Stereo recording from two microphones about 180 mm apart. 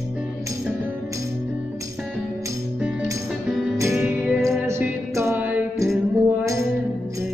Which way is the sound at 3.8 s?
15° right (ahead or behind).